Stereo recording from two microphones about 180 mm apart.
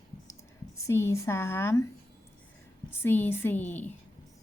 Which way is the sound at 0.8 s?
15° left (ahead or behind).